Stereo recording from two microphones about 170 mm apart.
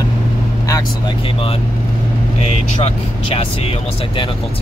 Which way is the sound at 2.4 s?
40° left (ahead or behind).